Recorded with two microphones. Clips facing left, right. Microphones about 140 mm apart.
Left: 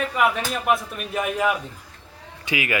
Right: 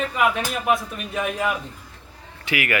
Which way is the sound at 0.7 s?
5° left (ahead or behind).